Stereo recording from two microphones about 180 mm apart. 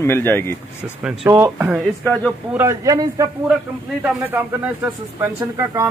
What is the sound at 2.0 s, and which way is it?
Speech, 5° left (ahead or behind).